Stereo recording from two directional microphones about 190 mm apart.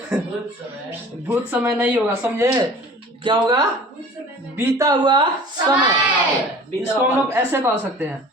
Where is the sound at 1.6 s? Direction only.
10° right (ahead or behind).